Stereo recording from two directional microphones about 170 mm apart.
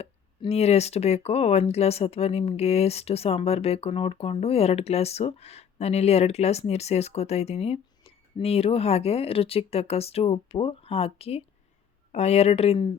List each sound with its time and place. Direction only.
0.0 s speech: 40° left (ahead or behind)